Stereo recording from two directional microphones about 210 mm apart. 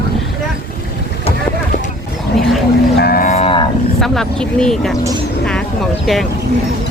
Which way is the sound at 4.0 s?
5° left (ahead or behind).